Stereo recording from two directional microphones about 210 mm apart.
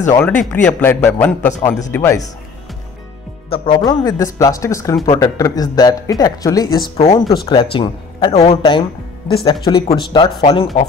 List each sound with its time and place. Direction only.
0.2 s speech: 5° left (ahead or behind)
3.4 s speech: 25° left (ahead or behind)
7.0 s speech: 30° left (ahead or behind)